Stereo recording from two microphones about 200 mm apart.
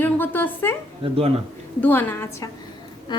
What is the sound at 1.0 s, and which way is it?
Speech, 30° right (ahead or behind).